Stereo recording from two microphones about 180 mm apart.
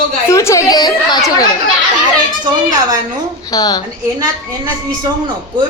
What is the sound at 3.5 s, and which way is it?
Speech, 20° left (ahead or behind).